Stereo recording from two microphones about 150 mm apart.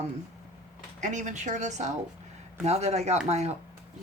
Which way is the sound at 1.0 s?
55° right (ahead or behind).